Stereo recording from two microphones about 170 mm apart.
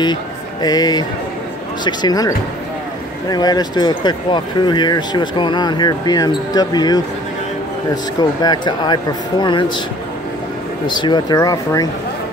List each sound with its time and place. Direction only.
0.0 s speech: 25° left (ahead or behind)
10.9 s speech: 25° left (ahead or behind)